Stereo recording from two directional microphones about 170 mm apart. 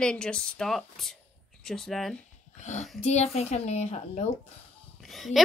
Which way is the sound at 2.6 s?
45° left (ahead or behind).